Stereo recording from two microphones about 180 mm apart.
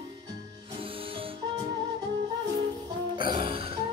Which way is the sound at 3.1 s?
25° right (ahead or behind).